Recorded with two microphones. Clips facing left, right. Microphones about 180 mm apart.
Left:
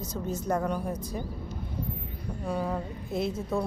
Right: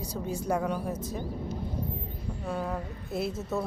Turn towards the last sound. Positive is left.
turn(degrees=-5)  # may be behind; listen again after turning